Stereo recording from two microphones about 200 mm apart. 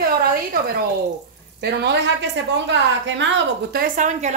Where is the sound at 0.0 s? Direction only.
45° right (ahead or behind).